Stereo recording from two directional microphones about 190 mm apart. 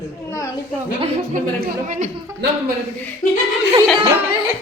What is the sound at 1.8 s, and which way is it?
Speech, 40° right (ahead or behind).